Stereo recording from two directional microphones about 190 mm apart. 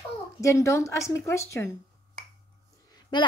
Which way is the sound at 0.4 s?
15° left (ahead or behind).